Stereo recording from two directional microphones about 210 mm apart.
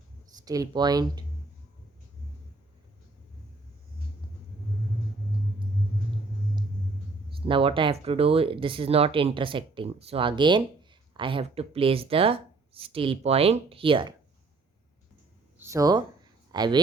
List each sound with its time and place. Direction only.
0.4 s speech: 15° right (ahead or behind)
7.4 s speech: 25° right (ahead or behind)
15.5 s speech: 15° right (ahead or behind)